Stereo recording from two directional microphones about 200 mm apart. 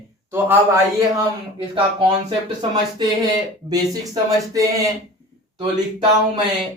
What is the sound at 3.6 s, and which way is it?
Speech, 20° right (ahead or behind).